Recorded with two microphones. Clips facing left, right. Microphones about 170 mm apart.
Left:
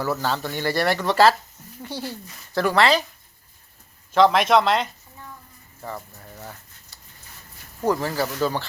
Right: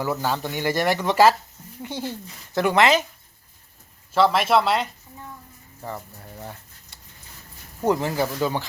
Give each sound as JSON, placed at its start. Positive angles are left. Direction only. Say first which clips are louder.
{"t": 0.0, "sound": "speech", "louder": "even", "side_deg": -15}
{"t": 4.1, "sound": "speech", "louder": "left 2 dB", "side_deg": -5}
{"t": 7.9, "sound": "speech", "louder": "right 1 dB", "side_deg": -20}